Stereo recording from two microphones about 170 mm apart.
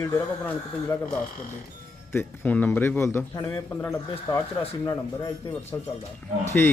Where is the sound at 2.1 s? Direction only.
10° left (ahead or behind).